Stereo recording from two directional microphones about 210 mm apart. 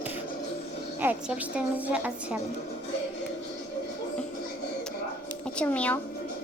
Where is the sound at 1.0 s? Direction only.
5° right (ahead or behind).